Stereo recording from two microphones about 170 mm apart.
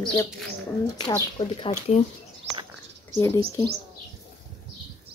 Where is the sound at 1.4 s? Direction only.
35° left (ahead or behind).